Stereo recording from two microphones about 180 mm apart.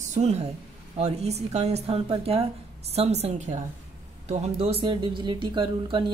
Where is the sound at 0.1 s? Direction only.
35° right (ahead or behind).